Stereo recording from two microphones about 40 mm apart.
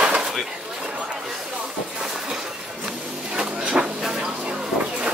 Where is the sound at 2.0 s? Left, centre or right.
Centre.